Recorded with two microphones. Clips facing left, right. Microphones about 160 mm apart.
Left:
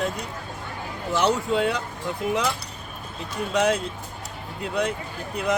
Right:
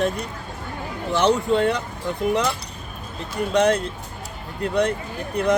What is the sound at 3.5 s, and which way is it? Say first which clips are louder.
Speech: right 3 dB; 5° left (ahead or behind).